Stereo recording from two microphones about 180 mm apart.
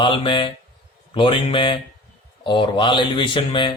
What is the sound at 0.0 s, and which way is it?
Speech, 25° left (ahead or behind).